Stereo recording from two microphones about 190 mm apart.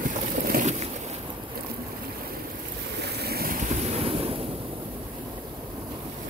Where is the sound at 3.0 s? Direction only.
55° right (ahead or behind); by 4.4 s 30° right (ahead or behind).